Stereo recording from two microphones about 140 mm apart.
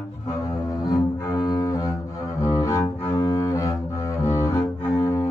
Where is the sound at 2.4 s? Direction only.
25° left (ahead or behind).